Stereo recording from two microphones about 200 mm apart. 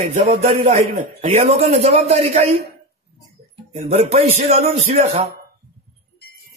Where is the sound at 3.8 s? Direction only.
30° right (ahead or behind).